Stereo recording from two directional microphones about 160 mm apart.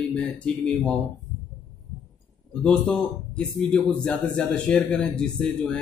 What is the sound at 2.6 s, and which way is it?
A man's voice, 5° left (ahead or behind).